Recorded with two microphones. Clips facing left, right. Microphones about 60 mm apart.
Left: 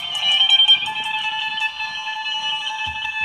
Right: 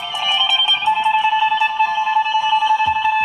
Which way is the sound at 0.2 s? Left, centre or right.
Right.